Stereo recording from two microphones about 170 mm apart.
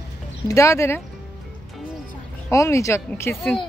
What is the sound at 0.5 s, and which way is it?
Speech, 15° left (ahead or behind).